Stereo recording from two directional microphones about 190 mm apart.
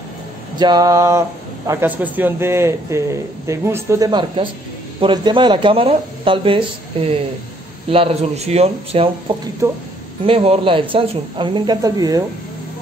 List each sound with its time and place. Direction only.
0.6 s a man's voice: 20° right (ahead or behind)
9.6 s a man's voice: 15° right (ahead or behind)
10.2 s speech: 30° right (ahead or behind)